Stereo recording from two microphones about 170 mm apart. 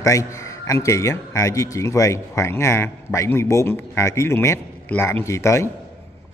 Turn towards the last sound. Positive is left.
turn(degrees=15)  # may be behind; listen again after turning